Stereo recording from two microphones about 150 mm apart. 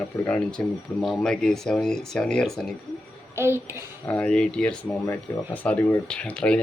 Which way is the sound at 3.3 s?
15° right (ahead or behind).